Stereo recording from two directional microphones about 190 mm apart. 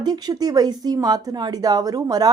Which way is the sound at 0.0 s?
20° right (ahead or behind).